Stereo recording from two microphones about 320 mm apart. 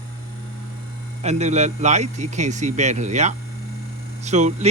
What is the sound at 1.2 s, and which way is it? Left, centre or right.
A man's voice, right.